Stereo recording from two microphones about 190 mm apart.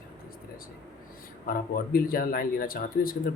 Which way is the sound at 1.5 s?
50° left (ahead or behind).